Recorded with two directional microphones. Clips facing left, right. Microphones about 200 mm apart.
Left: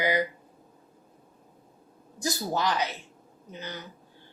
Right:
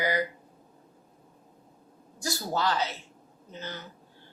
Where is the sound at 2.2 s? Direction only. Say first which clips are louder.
Left 2 dB; 15° left (ahead or behind).